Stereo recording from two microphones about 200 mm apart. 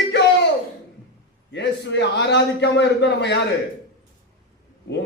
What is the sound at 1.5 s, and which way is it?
A man's voice, 60° left (ahead or behind).